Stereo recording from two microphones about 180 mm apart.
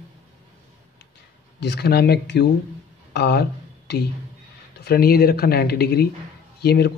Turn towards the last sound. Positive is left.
turn(degrees=65)  # may be behind; listen again after turning